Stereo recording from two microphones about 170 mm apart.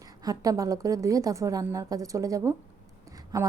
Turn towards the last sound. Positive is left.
turn(degrees=-20)  # may be behind; listen again after turning